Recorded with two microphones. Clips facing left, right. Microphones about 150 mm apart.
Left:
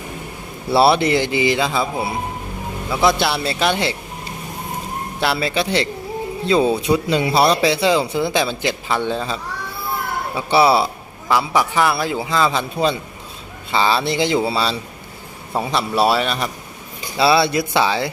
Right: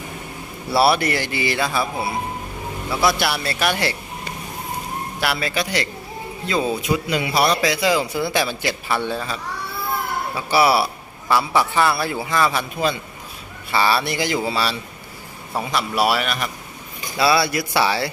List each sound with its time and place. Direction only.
0.7 s speech: 25° left (ahead or behind)
5.2 s a man's voice: 25° left (ahead or behind)
10.3 s a man's voice: 25° left (ahead or behind)
13.7 s speech: 20° left (ahead or behind)